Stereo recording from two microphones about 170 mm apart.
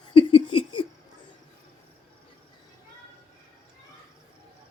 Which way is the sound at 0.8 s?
30° left (ahead or behind).